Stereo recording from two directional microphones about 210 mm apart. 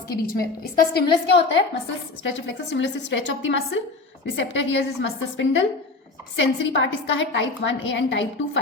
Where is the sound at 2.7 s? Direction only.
60° left (ahead or behind).